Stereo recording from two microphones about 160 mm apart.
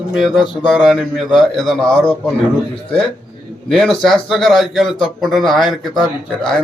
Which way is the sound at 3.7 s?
5° left (ahead or behind).